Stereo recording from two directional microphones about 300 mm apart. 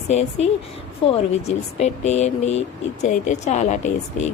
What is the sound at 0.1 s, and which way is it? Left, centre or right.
Speech, left.